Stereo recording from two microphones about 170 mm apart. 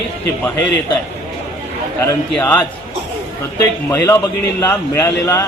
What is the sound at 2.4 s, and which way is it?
Speech, 10° left (ahead or behind).